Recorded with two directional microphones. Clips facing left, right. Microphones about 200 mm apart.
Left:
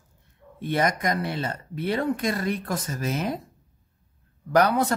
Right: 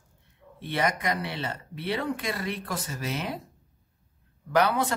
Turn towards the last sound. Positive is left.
turn(degrees=45)  # may be behind; listen again after turning